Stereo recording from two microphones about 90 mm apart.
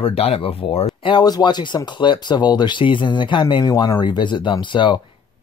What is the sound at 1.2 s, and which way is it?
Speech, 50° left (ahead or behind).